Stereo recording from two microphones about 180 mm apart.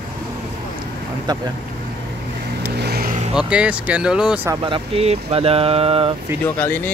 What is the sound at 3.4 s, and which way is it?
Speech, 5° right (ahead or behind).